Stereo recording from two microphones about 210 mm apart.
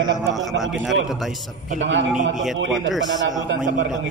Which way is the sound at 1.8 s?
65° right (ahead or behind).